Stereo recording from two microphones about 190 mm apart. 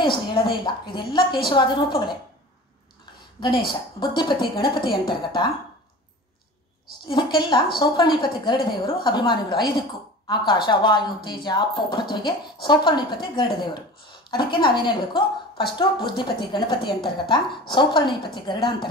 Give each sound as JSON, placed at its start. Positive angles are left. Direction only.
{"t": 0.0, "sound": "a woman's voice", "side_deg": 25}
{"t": 3.3, "sound": "a woman's voice", "side_deg": 25}
{"t": 7.1, "sound": "a woman's voice", "side_deg": 25}